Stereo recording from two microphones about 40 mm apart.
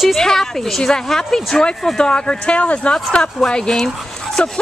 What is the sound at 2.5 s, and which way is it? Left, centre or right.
Speech, left.